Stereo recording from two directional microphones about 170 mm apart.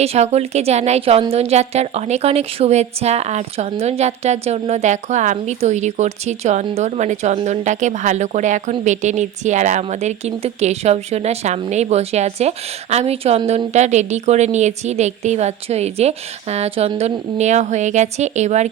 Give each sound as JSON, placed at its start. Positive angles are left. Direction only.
{"t": 0.0, "sound": "a woman's voice", "side_deg": -40}